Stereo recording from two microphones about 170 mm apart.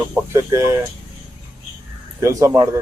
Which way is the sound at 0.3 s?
15° right (ahead or behind).